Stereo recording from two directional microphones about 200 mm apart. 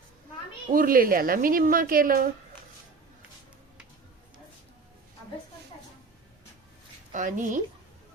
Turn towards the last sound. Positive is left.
turn(degrees=-40)  # may be behind; listen again after turning